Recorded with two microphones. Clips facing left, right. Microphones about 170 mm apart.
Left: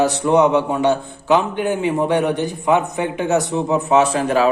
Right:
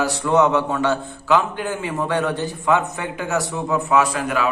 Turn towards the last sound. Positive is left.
turn(degrees=30)  # may be behind; listen again after turning